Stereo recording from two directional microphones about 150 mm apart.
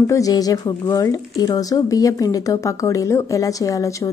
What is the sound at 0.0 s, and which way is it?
Speech, 20° left (ahead or behind).